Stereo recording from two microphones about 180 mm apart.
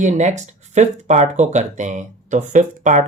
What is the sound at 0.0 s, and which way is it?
Speech, 40° right (ahead or behind).